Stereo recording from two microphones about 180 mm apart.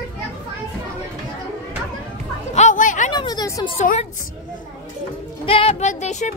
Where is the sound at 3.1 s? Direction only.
25° left (ahead or behind).